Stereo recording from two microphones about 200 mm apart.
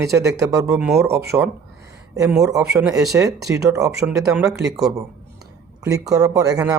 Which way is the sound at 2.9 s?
15° right (ahead or behind).